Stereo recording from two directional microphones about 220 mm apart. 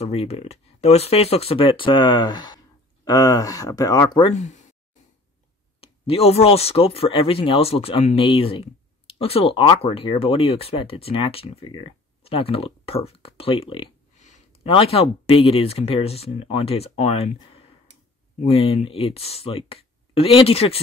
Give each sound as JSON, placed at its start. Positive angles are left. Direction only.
{"t": 0.0, "sound": "speech", "side_deg": 30}
{"t": 4.3, "sound": "speech", "side_deg": 30}
{"t": 5.8, "sound": "speech", "side_deg": 25}